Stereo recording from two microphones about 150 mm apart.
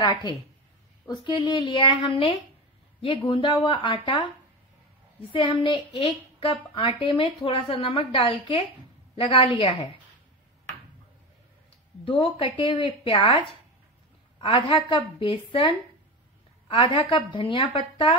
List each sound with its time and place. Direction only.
0.0 s a woman's voice: 25° left (ahead or behind)
5.3 s a woman's voice: 35° left (ahead or behind)
12.0 s a woman's voice: 35° left (ahead or behind)
14.4 s a woman's voice: 35° left (ahead or behind)
16.6 s a woman's voice: 35° left (ahead or behind)